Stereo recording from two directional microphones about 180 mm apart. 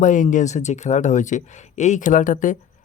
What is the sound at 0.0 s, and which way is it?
Speech, 45° left (ahead or behind).